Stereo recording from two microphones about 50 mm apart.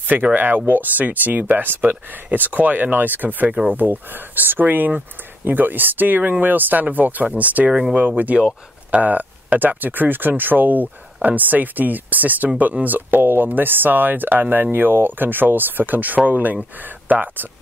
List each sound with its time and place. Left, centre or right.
0.0 s speech: right